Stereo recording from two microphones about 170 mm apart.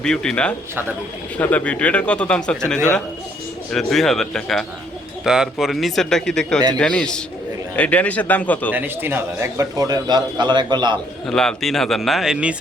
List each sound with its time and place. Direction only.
0.0 s speech: 5° left (ahead or behind)
8.7 s a man's voice: 10° right (ahead or behind)
11.3 s speech: 5° left (ahead or behind)